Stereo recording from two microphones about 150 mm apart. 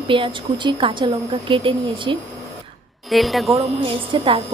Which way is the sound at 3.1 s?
Centre (ahead or behind).